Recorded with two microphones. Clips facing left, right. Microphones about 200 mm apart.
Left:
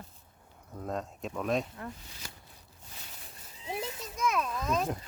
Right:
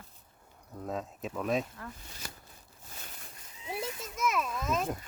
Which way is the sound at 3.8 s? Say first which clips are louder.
Even; 5° right (ahead or behind).